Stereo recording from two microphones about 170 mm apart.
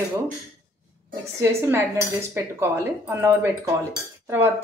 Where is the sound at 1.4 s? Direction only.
15° right (ahead or behind).